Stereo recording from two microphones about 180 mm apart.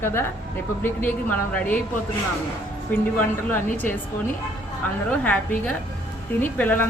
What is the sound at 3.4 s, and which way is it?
A woman's voice, 10° left (ahead or behind).